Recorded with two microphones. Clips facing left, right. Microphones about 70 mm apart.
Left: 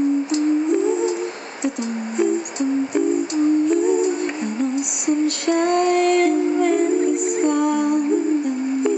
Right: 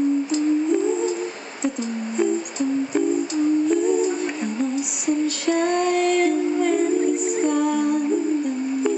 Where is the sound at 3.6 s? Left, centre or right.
Centre.